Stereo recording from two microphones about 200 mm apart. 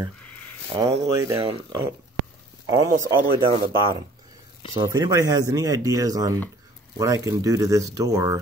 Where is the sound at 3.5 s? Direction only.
30° right (ahead or behind).